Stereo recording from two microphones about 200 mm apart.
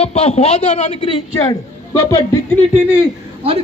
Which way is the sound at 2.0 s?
15° left (ahead or behind).